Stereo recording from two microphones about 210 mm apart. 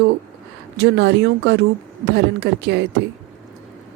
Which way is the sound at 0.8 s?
55° right (ahead or behind).